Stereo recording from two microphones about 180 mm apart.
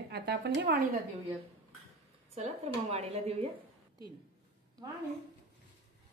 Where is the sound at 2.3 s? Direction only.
35° right (ahead or behind).